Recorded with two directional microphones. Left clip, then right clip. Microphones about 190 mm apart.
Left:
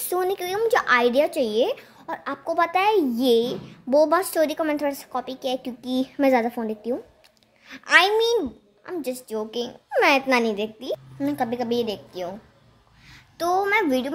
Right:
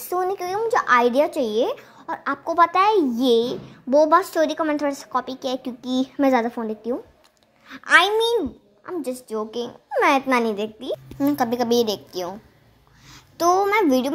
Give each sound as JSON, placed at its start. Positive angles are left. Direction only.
{"t": 0.1, "sound": "a sound", "side_deg": 15}
{"t": 0.8, "sound": "a woman's voice", "side_deg": 0}
{"t": 11.1, "sound": "a woman's voice", "side_deg": -10}